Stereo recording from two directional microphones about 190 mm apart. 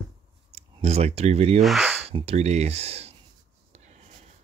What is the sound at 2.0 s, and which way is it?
Speech, 35° right (ahead or behind).